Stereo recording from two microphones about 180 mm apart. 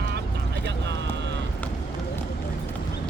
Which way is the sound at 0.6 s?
80° right.